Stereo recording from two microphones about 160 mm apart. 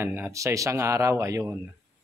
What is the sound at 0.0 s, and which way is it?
A man's voice, 15° right (ahead or behind).